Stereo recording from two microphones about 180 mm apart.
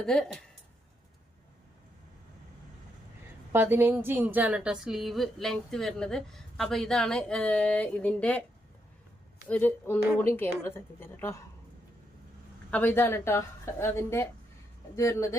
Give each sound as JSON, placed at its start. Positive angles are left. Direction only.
{"t": 0.0, "sound": "a woman's voice", "side_deg": 5}
{"t": 3.5, "sound": "a woman's voice", "side_deg": -10}
{"t": 9.5, "sound": "a woman's voice", "side_deg": 10}
{"t": 12.7, "sound": "a woman's voice", "side_deg": 10}